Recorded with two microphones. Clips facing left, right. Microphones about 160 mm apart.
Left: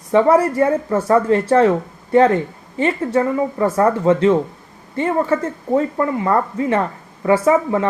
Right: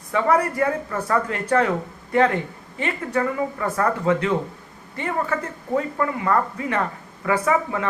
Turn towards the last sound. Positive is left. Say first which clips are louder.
# left 6 dB
turn(degrees=30)  # may be behind; listen again after turning